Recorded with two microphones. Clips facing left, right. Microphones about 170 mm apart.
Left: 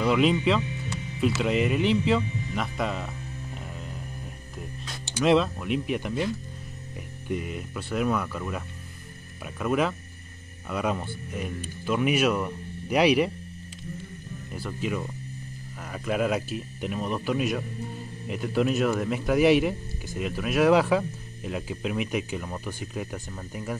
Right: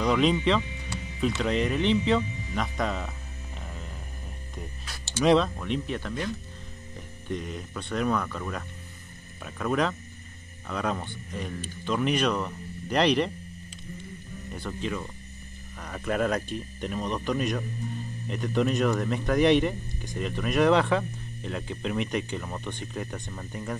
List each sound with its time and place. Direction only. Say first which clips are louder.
0.0 s speech: left 1 dB; 5° left (ahead or behind)
5.2 s speech: even; 5° left (ahead or behind)
14.5 s speech: left 2 dB; 5° left (ahead or behind)